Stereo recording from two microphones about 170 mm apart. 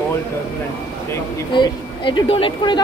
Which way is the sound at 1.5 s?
25° left (ahead or behind).